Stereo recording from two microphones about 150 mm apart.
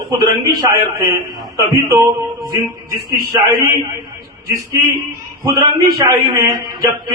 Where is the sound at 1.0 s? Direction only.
25° right (ahead or behind).